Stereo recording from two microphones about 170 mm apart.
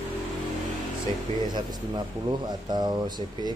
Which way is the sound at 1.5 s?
25° right (ahead or behind).